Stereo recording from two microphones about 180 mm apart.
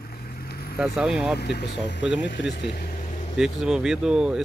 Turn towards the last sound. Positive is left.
turn(degrees=-5)  # may be behind; listen again after turning